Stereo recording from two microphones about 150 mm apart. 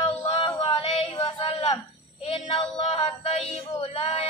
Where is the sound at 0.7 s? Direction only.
40° left (ahead or behind).